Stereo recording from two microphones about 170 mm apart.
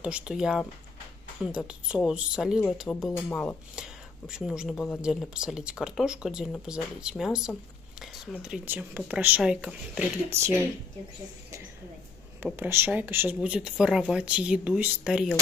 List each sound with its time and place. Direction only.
0.0 s speech: 5° right (ahead or behind)
3.7 s speech: 5° right (ahead or behind)
10.3 s speech: 15° right (ahead or behind)
12.4 s speech: 10° right (ahead or behind)